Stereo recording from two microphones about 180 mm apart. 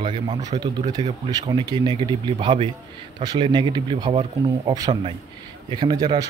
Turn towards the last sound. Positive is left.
turn(degrees=-25)  # may be behind; listen again after turning